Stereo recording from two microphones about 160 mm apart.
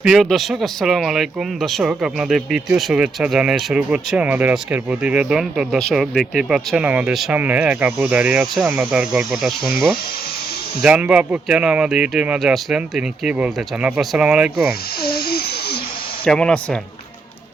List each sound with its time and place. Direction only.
0.0 s speech: centre (ahead or behind)
15.0 s a sound: 75° left (ahead or behind)
16.2 s speech: 5° left (ahead or behind)